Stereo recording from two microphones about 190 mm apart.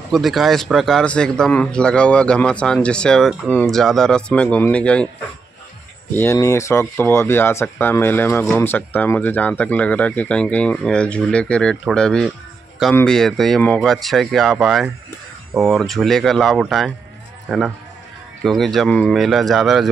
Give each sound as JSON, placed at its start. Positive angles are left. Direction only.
{"t": 0.1, "sound": "a man's voice", "side_deg": 0}
{"t": 6.1, "sound": "a man's voice", "side_deg": 15}